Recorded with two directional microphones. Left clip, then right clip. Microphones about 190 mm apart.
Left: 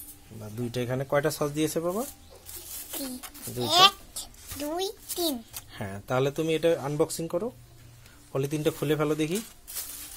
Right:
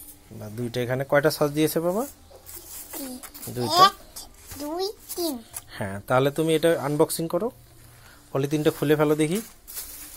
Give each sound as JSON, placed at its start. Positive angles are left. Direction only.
{"t": 0.4, "sound": "speech", "side_deg": -20}
{"t": 2.9, "sound": "babbling", "side_deg": 20}
{"t": 4.6, "sound": "a child's voice", "side_deg": 25}
{"t": 5.7, "sound": "speech", "side_deg": -20}